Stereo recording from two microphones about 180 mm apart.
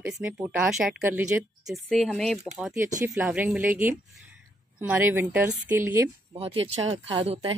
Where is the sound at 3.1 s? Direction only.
10° right (ahead or behind).